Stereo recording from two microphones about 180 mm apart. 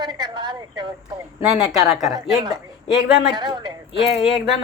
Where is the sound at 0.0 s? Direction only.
25° right (ahead or behind).